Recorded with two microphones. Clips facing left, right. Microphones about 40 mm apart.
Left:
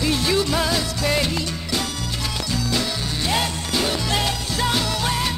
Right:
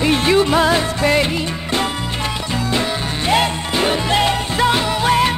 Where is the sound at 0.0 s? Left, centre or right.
Right.